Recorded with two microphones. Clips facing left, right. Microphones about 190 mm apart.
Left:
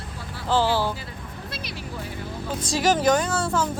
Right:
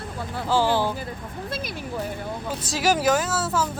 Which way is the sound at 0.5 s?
15° right (ahead or behind).